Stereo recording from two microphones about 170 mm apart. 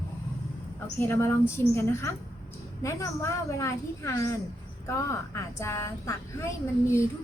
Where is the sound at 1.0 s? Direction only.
15° left (ahead or behind).